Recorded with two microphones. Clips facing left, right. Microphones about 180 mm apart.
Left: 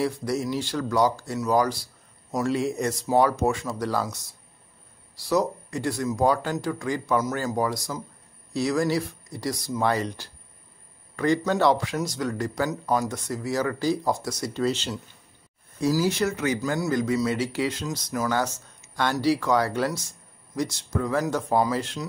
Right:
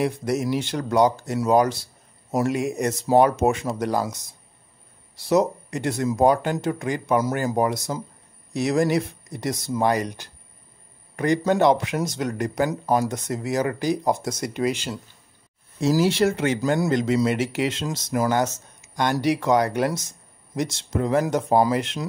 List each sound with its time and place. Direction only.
0.0 s speech: 20° right (ahead or behind)
16.1 s speech: 30° right (ahead or behind)